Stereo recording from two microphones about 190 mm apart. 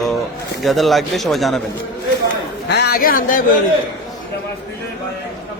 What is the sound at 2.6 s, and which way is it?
Speech, 60° left (ahead or behind).